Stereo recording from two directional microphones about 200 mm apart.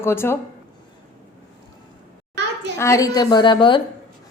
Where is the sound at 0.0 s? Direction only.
10° left (ahead or behind).